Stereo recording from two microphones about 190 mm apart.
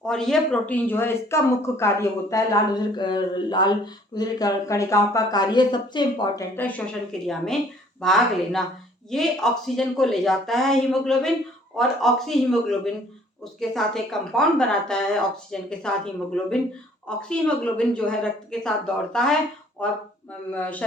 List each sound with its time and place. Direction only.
0.0 s speech: 5° left (ahead or behind)